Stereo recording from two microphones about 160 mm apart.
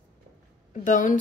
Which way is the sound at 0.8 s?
55° left (ahead or behind).